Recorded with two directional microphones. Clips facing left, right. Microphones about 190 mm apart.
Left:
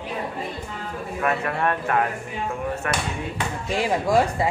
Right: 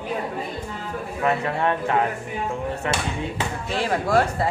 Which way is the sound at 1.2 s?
20° right (ahead or behind).